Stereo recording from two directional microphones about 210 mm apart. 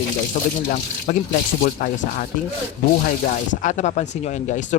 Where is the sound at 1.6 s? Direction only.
40° left (ahead or behind).